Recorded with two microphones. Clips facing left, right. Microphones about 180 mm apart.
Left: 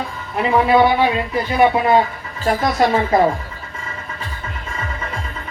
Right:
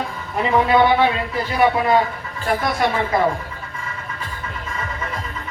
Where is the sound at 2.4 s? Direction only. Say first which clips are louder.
Left 3 dB; 30° left (ahead or behind).